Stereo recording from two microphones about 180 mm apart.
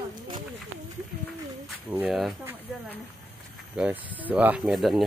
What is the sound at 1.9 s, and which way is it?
Speech, 5° right (ahead or behind).